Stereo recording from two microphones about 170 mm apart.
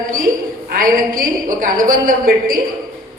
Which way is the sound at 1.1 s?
55° right (ahead or behind).